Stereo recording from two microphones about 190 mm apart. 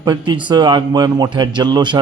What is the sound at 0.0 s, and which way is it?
A man's voice, 25° right (ahead or behind).